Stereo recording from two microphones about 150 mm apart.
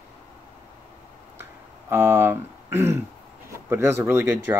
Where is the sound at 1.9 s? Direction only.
15° right (ahead or behind).